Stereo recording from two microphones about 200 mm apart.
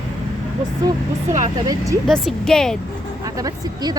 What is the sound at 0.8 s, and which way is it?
Speech, 20° right (ahead or behind).